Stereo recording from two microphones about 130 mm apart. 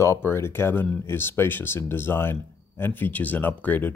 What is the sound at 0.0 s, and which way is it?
Speech, 20° left (ahead or behind).